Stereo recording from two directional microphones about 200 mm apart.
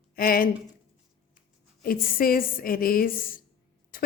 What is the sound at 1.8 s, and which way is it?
Speech, 45° left (ahead or behind).